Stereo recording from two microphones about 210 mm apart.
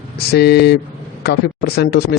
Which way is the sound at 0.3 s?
50° left (ahead or behind).